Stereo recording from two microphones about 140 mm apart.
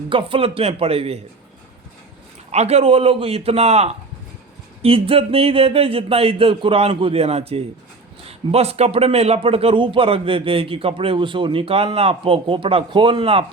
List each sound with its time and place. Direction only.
0.1 s speech: 40° right (ahead or behind)
2.5 s a man's voice: 50° right (ahead or behind)